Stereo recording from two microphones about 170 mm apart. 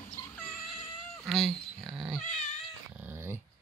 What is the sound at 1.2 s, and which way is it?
Cat, centre (ahead or behind).